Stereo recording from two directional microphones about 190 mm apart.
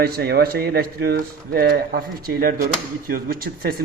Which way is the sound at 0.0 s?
55° right (ahead or behind).